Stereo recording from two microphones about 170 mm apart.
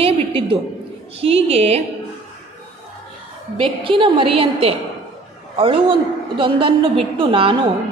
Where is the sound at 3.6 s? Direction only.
30° right (ahead or behind).